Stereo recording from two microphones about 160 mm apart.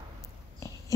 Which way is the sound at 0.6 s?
20° left (ahead or behind).